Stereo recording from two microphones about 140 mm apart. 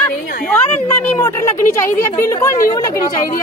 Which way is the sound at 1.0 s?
15° left (ahead or behind).